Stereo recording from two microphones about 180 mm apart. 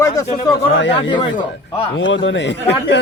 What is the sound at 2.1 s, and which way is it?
Speech, 90° left.